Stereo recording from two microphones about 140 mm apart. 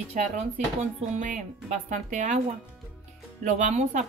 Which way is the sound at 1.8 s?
60° right (ahead or behind).